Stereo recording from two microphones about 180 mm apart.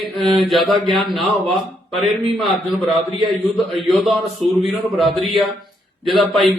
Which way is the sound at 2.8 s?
30° right (ahead or behind).